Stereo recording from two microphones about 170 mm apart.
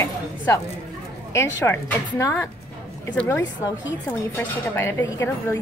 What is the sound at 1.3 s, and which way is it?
Speech, 15° left (ahead or behind).